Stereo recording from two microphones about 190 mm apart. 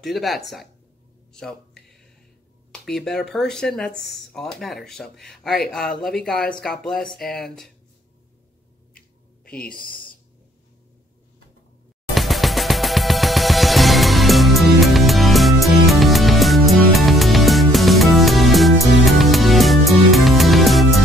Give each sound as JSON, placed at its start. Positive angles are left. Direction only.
{"t": 0.0, "sound": "speech", "side_deg": 0}
{"t": 1.3, "sound": "a sound", "side_deg": 5}
{"t": 3.3, "sound": "speech", "side_deg": 5}
{"t": 9.6, "sound": "speech", "side_deg": 50}
{"t": 12.1, "sound": "music", "side_deg": 0}